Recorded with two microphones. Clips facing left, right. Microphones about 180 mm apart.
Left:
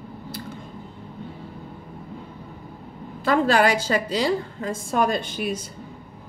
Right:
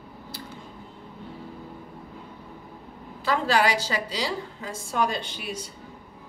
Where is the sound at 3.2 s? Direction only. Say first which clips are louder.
Left 4 dB; 50° left (ahead or behind).